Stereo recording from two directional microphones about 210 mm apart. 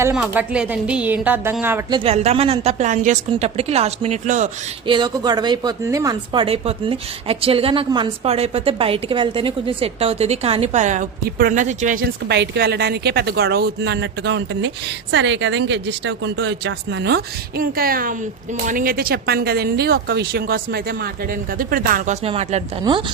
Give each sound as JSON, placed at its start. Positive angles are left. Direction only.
{"t": 0.0, "sound": "speech", "side_deg": -5}
{"t": 1.9, "sound": "a woman's voice", "side_deg": -30}
{"t": 4.9, "sound": "a woman's voice", "side_deg": -20}
{"t": 12.3, "sound": "a woman's voice", "side_deg": -50}